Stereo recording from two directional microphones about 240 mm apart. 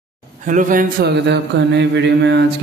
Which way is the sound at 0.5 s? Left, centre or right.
Right.